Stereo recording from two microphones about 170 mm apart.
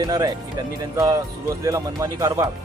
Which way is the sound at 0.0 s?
25° right (ahead or behind).